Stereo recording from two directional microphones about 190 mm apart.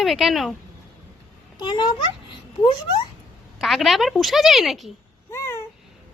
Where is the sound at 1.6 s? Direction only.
25° left (ahead or behind).